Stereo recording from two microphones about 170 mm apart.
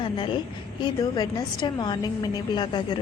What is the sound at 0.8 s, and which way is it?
A woman's voice, 25° left (ahead or behind).